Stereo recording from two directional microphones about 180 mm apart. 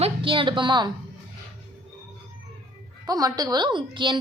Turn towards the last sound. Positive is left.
turn(degrees=-25)  # may be behind; listen again after turning